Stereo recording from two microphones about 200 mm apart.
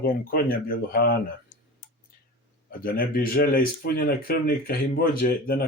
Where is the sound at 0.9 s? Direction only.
50° left (ahead or behind).